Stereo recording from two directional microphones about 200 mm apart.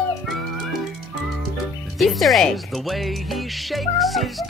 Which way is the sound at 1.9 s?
Centre (ahead or behind).